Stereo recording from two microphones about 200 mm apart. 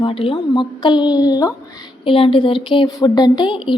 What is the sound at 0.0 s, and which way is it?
Speech, 25° left (ahead or behind).